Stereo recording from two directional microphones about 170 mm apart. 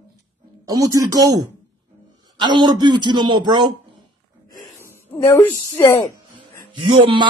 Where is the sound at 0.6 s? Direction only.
20° right (ahead or behind).